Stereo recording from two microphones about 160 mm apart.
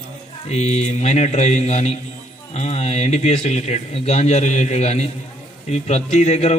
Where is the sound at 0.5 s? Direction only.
45° left (ahead or behind).